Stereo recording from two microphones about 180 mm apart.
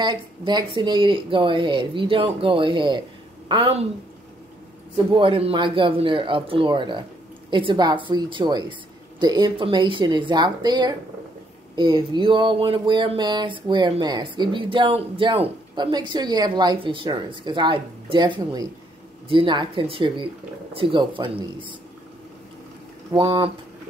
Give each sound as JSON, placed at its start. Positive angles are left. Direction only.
{"t": 0.0, "sound": "speech", "side_deg": -25}
{"t": 4.9, "sound": "speech", "side_deg": -30}
{"t": 23.1, "sound": "speech", "side_deg": -30}